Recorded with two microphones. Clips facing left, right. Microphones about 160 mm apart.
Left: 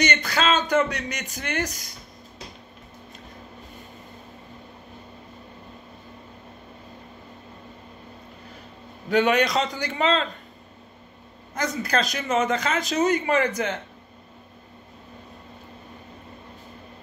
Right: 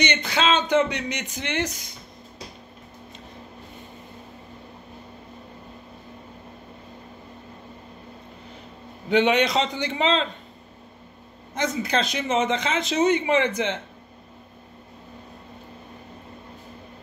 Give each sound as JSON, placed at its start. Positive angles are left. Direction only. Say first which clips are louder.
{"t": 0.0, "sound": "speech", "louder": "even", "side_deg": -20}
{"t": 9.1, "sound": "speech", "louder": "right 1 dB", "side_deg": -20}
{"t": 11.8, "sound": "speech", "louder": "right 1 dB", "side_deg": -25}